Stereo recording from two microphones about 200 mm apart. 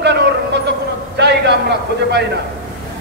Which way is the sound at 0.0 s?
60° right (ahead or behind).